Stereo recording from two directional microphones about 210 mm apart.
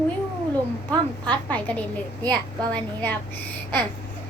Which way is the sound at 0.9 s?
5° left (ahead or behind).